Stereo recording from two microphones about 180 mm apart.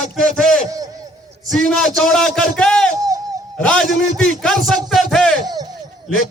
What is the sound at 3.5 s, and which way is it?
A man's voice, 5° left (ahead or behind).